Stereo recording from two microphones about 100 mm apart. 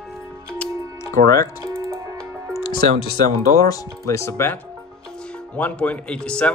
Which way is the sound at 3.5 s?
35° left (ahead or behind).